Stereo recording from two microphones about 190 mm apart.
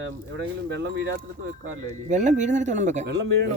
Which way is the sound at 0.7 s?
70° right (ahead or behind).